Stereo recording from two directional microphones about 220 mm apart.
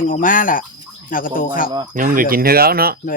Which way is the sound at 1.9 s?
40° right (ahead or behind).